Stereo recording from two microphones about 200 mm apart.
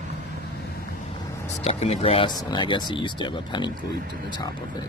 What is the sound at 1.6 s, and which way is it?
Speech, 30° left (ahead or behind).